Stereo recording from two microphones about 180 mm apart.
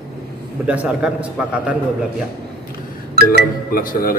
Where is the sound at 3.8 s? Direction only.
50° left (ahead or behind).